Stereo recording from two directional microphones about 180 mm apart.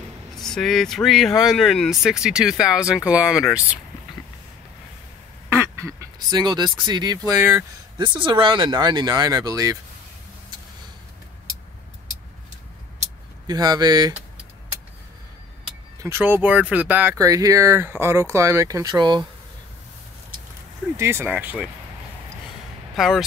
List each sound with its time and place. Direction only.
0.4 s speech: centre (ahead or behind)
5.5 s speech: 15° right (ahead or behind)
7.3 s speech: 10° right (ahead or behind)
8.0 s speech: 25° right (ahead or behind)
13.5 s speech: 20° right (ahead or behind)
16.0 s speech: 10° right (ahead or behind)
20.9 s speech: 15° right (ahead or behind)
22.9 s speech: centre (ahead or behind)